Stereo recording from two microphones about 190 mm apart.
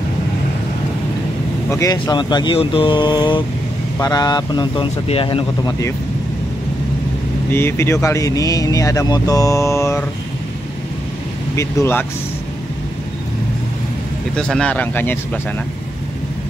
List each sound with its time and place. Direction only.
1.7 s speech: 15° left (ahead or behind)
7.5 s speech: 10° left (ahead or behind)
11.5 s speech: 10° left (ahead or behind)
14.3 s speech: 5° left (ahead or behind)